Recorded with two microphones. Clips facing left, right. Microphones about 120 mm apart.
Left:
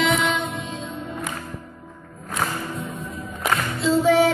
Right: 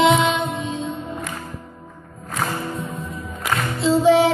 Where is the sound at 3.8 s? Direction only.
25° right (ahead or behind).